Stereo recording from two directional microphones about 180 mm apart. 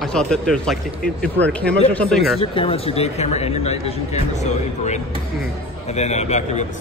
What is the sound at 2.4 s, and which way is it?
Speech, 30° left (ahead or behind).